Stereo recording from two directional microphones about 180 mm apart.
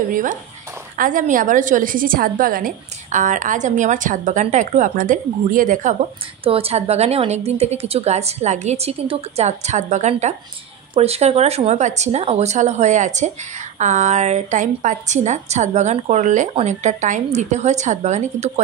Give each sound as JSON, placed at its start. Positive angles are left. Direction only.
{"t": 0.1, "sound": "a woman's voice", "side_deg": -50}
{"t": 6.4, "sound": "a woman's voice", "side_deg": -30}